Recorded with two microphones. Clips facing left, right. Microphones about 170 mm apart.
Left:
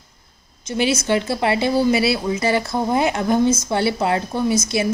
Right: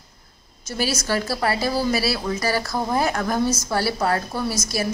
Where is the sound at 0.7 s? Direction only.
20° left (ahead or behind).